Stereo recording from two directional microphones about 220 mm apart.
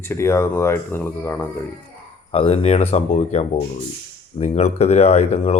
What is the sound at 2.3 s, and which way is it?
Speech, 25° left (ahead or behind).